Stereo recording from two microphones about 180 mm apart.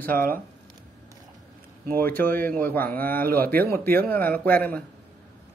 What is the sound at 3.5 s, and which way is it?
Speech, 55° right (ahead or behind).